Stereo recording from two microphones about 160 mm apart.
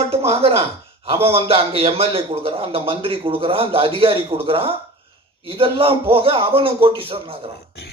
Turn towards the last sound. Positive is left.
turn(degrees=-35)  # may be behind; listen again after turning